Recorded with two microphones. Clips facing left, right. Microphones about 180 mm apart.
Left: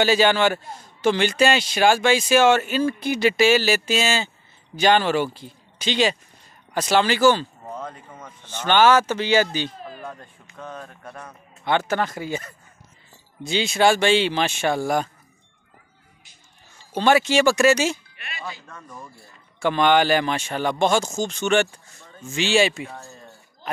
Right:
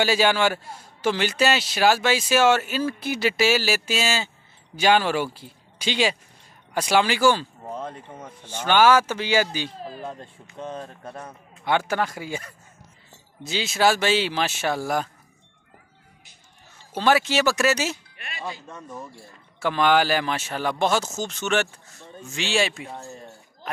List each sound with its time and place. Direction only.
0.0 s a man's voice: 10° right (ahead or behind)
7.7 s speech: 30° right (ahead or behind)
8.5 s a man's voice: 10° right (ahead or behind)
9.8 s speech: 30° right (ahead or behind)
11.6 s a man's voice: 10° right (ahead or behind)
16.9 s speech: 5° right (ahead or behind)
18.7 s speech: 20° right (ahead or behind)
19.6 s speech: 5° right (ahead or behind)
22.8 s a sound: 20° right (ahead or behind)